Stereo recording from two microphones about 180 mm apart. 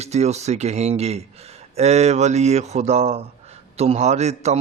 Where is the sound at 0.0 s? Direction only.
35° right (ahead or behind).